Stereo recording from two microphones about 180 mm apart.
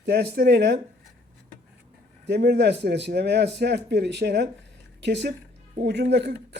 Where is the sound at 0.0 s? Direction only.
70° right (ahead or behind).